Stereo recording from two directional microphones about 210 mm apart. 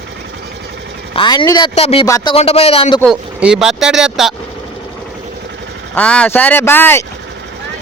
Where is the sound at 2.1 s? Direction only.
15° left (ahead or behind).